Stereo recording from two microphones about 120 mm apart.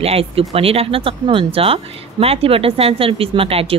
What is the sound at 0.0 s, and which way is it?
Speech, 55° right (ahead or behind).